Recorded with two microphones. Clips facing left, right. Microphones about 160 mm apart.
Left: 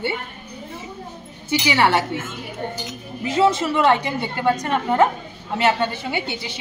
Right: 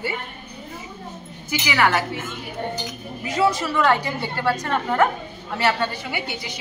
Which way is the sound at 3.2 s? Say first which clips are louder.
Left 3 dB; 25° left (ahead or behind).